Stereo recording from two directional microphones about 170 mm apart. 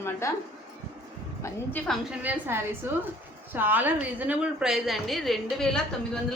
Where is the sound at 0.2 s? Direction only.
15° left (ahead or behind).